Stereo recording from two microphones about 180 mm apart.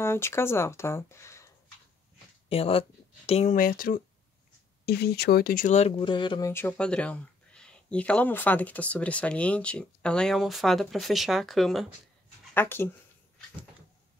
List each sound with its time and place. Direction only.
0.0 s speech: 15° left (ahead or behind)
2.5 s speech: 30° left (ahead or behind); by 4.0 s 50° left (ahead or behind)
4.8 s speech: 60° left (ahead or behind); by 6.5 s 25° left (ahead or behind)
6.5 s speech: 5° left (ahead or behind)
12.5 s speech: 10° left (ahead or behind)